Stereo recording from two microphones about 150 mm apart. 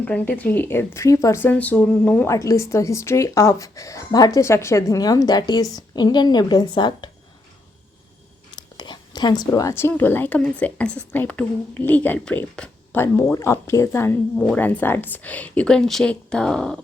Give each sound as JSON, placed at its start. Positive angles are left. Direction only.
{"t": 0.0, "sound": "speech", "side_deg": 10}
{"t": 2.3, "sound": "speech", "side_deg": 20}
{"t": 8.4, "sound": "speech", "side_deg": 30}